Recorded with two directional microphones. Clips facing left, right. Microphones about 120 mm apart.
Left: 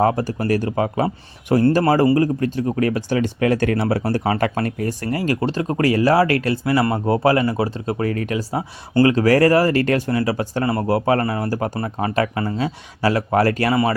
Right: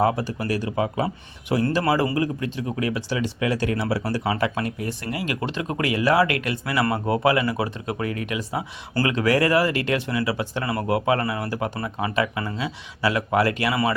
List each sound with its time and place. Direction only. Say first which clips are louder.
0.0 s speech: left 4 dB; 45° left (ahead or behind)